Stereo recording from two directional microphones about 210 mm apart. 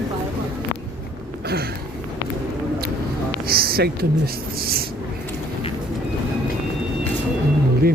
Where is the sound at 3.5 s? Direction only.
45° right (ahead or behind).